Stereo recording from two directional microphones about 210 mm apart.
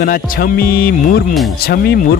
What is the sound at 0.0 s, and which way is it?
Speech, 45° left (ahead or behind).